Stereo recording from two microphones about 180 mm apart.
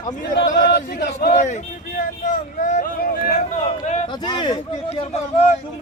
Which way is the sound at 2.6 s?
45° left (ahead or behind).